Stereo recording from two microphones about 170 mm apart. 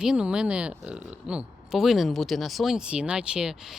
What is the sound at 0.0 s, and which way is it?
Speech, 5° right (ahead or behind).